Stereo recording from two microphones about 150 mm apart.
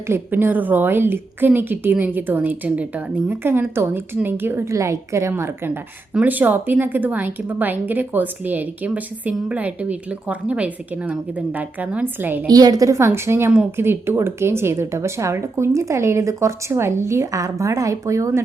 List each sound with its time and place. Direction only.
0.1 s a woman's voice: 15° right (ahead or behind)
12.5 s a woman's voice: 25° right (ahead or behind)